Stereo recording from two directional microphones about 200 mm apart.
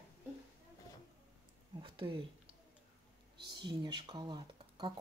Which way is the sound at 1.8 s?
25° right (ahead or behind).